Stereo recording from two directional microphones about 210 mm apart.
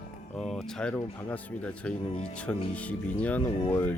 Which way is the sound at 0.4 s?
5° left (ahead or behind).